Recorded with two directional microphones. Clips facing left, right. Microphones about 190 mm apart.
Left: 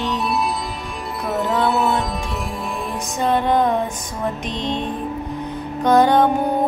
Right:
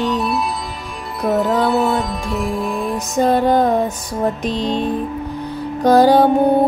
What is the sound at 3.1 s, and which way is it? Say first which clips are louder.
Music: right 4 dB; 40° right (ahead or behind).